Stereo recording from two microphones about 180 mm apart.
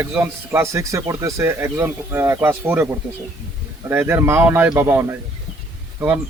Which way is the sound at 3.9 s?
15° right (ahead or behind).